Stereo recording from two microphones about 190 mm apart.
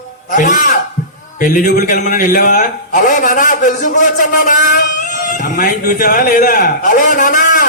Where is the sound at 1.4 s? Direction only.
45° left (ahead or behind).